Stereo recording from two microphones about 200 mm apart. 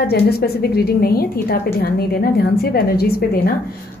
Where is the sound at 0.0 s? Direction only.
55° left (ahead or behind).